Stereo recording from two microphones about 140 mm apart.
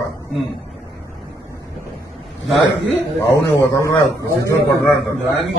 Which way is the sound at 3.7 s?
20° left (ahead or behind).